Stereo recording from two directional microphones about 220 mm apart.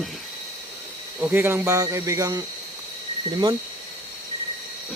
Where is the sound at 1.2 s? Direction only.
10° right (ahead or behind).